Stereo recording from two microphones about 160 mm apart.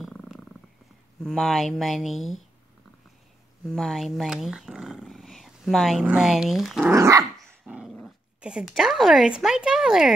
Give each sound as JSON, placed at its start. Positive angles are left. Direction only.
{"t": 0.0, "sound": "purr", "side_deg": 0}
{"t": 1.2, "sound": "speech", "side_deg": 5}
{"t": 3.6, "sound": "speech", "side_deg": 0}
{"t": 6.9, "sound": "dog", "side_deg": -20}
{"t": 7.6, "sound": "dog", "side_deg": -5}
{"t": 8.4, "sound": "speech", "side_deg": -5}